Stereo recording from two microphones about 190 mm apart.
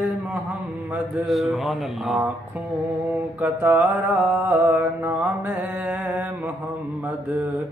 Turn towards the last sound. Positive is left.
turn(degrees=-10)  # may be behind; listen again after turning